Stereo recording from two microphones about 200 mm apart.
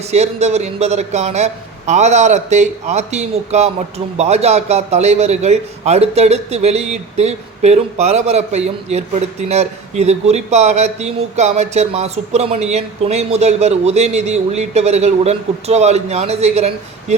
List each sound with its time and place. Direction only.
0.0 s a man's voice: 35° right (ahead or behind)